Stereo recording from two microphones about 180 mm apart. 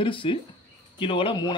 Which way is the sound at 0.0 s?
30° left (ahead or behind).